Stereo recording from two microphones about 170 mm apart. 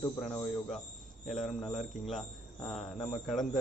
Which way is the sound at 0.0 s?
5° left (ahead or behind).